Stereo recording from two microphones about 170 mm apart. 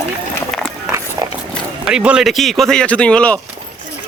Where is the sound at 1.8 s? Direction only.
5° right (ahead or behind).